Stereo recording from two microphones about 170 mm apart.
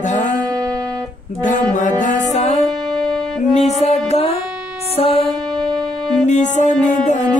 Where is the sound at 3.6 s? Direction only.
40° left (ahead or behind).